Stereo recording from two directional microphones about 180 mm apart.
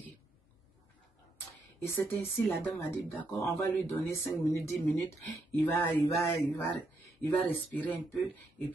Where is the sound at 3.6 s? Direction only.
15° left (ahead or behind).